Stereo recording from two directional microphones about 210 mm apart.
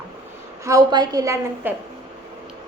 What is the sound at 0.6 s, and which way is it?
A woman's voice, 15° right (ahead or behind).